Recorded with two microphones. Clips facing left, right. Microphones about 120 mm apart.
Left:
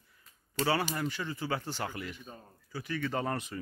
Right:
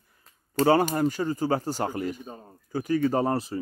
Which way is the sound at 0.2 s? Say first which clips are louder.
Right 9 dB; 45° right (ahead or behind).